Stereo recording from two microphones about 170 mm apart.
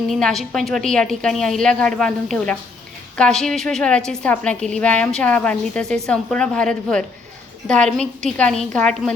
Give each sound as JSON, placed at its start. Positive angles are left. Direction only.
{"t": 0.1, "sound": "a woman's voice", "side_deg": 5}